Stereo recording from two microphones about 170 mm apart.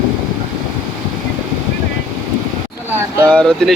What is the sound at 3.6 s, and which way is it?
Speech, 5° left (ahead or behind).